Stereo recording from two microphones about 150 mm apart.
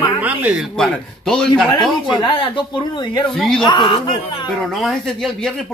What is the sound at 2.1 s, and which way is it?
Speech, 30° left (ahead or behind).